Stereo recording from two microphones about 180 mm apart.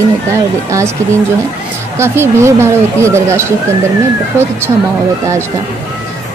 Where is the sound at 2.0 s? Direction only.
15° right (ahead or behind).